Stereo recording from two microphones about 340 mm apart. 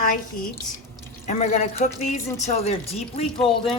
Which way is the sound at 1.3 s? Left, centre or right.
Left.